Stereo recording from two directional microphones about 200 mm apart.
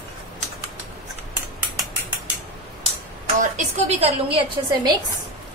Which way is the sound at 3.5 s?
30° right (ahead or behind).